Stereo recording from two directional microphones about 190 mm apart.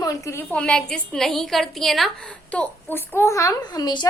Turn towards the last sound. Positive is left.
turn(degrees=20)  # may be behind; listen again after turning